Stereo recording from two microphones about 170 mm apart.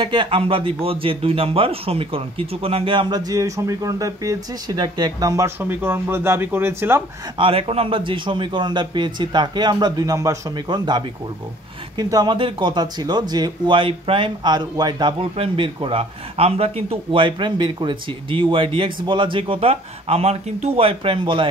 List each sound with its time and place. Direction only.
0.0 s a man's voice: 30° right (ahead or behind)
5.6 s speech: 10° right (ahead or behind)
7.3 s a man's voice: 35° right (ahead or behind)